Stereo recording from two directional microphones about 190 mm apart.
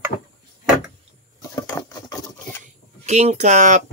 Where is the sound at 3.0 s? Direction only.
35° right (ahead or behind).